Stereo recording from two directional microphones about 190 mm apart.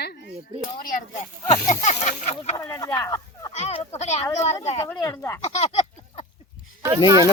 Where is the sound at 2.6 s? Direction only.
15° left (ahead or behind).